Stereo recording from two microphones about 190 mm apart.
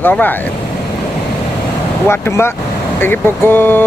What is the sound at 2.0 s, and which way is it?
Speech, 10° left (ahead or behind).